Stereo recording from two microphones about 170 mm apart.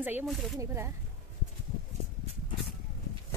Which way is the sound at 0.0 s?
10° right (ahead or behind).